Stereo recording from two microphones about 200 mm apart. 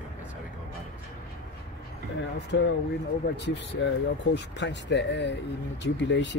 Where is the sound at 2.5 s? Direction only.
60° left (ahead or behind).